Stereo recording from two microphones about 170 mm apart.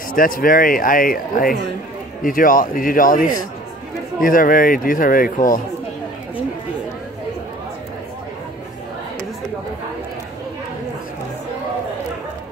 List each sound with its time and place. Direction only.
0.1 s a man's voice: 55° left (ahead or behind)